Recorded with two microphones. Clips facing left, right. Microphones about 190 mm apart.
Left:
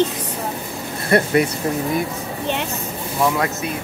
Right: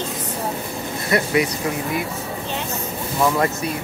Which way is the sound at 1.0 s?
50° left (ahead or behind).